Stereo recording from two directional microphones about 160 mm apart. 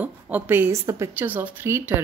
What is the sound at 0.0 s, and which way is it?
Speech, 10° right (ahead or behind).